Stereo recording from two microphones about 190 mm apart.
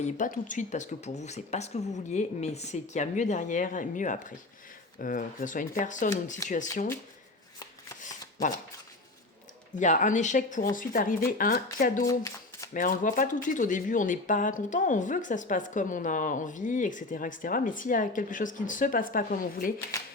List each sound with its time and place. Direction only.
0.0 s speech: 40° left (ahead or behind)
9.7 s speech: 40° left (ahead or behind)
12.0 s speech: 15° left (ahead or behind)
12.7 s speech: 45° left (ahead or behind)
19.9 s speech: 15° left (ahead or behind)